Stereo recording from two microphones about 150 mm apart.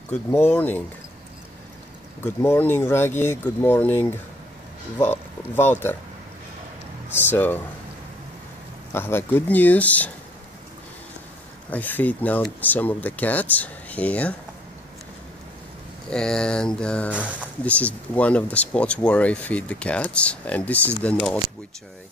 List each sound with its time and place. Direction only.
0.1 s speech: 15° left (ahead or behind)
2.2 s speech: 15° left (ahead or behind)
7.2 s speech: 15° left (ahead or behind)
8.9 s speech: 15° left (ahead or behind)
11.7 s speech: 10° left (ahead or behind)
16.1 s speech: 5° left (ahead or behind)